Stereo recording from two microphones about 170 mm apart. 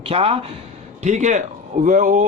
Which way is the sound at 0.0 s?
35° right (ahead or behind).